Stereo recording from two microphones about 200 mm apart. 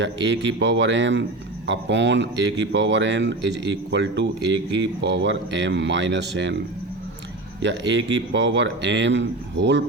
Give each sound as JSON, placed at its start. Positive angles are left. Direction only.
{"t": 0.0, "sound": "speech", "side_deg": -65}
{"t": 7.6, "sound": "speech", "side_deg": -65}